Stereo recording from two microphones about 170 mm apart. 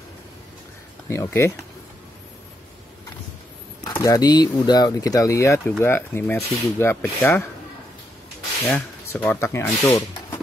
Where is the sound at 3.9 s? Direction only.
20° left (ahead or behind).